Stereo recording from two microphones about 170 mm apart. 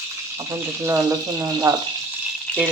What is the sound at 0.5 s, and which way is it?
Speech, 15° right (ahead or behind).